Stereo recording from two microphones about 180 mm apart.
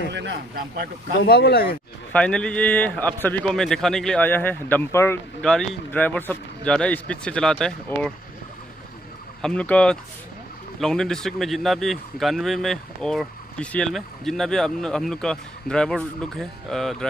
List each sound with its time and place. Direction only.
0.1 s speech: 80° right
0.6 s speech: 55° right (ahead or behind)
1.2 s speech: 60° left (ahead or behind)
2.1 s speech: 5° left (ahead or behind)
9.4 s speech: 5° left (ahead or behind)